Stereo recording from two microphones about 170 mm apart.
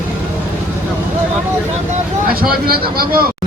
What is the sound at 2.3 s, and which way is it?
Speech, 60° right (ahead or behind).